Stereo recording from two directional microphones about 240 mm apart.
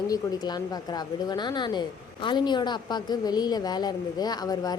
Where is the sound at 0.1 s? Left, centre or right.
Centre.